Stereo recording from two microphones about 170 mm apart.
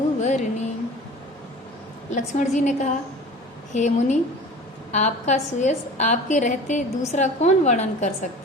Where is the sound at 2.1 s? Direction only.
45° left (ahead or behind).